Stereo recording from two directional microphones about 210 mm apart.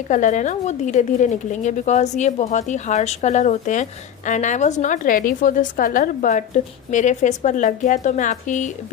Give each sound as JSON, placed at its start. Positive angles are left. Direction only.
{"t": 0.1, "sound": "a woman's voice", "side_deg": 35}